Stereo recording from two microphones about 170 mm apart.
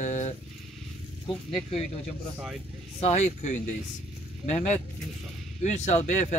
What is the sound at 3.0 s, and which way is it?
Speech, 40° left (ahead or behind).